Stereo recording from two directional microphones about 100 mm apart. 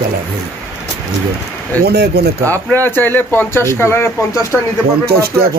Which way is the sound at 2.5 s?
20° left (ahead or behind).